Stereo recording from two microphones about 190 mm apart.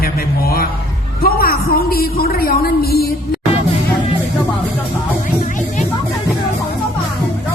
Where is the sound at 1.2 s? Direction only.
50° left (ahead or behind).